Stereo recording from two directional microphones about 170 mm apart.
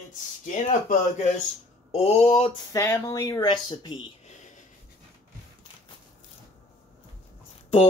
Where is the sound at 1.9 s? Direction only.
40° left (ahead or behind).